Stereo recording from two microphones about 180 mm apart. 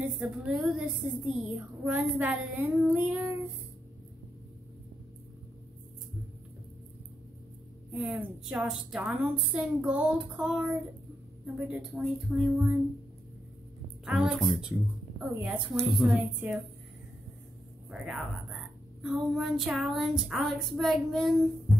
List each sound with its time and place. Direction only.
0.0 s a woman's voice: 5° right (ahead or behind)
7.9 s a woman's voice: 10° right (ahead or behind)
14.0 s speech: 5° right (ahead or behind)
18.0 s a woman's voice: centre (ahead or behind)